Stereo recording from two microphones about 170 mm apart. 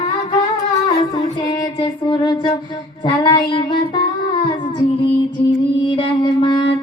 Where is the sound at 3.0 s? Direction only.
25° left (ahead or behind).